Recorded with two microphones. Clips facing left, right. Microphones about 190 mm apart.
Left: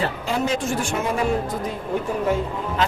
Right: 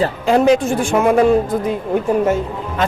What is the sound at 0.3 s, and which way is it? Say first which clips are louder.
Speech: right 12 dB; 65° right (ahead or behind).